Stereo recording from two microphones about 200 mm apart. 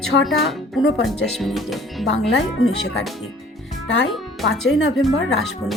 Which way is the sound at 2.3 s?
80° left.